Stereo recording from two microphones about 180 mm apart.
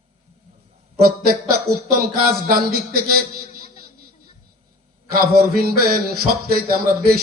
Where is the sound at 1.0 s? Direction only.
55° right (ahead or behind).